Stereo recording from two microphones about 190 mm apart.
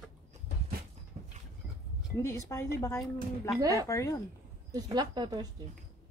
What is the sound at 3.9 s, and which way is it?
Speech, 15° left (ahead or behind).